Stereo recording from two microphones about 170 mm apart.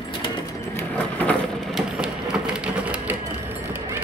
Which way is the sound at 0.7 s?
10° left (ahead or behind).